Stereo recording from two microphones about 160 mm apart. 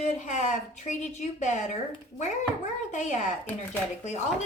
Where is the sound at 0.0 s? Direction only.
50° left (ahead or behind).